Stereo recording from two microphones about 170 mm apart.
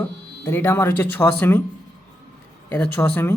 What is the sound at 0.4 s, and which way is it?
A man's voice, 15° left (ahead or behind).